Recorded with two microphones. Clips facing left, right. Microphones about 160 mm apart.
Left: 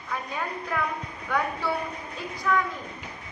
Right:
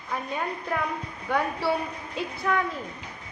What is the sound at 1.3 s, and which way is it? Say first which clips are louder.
Speech: right 2 dB; 30° right (ahead or behind).